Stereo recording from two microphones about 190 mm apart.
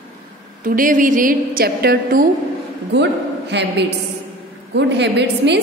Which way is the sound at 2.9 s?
65° right (ahead or behind).